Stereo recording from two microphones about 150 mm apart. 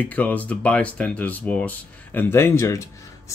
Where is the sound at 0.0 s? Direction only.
10° left (ahead or behind).